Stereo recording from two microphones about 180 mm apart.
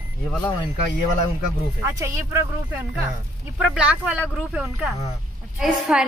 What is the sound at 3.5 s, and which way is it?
A woman's voice, 5° right (ahead or behind).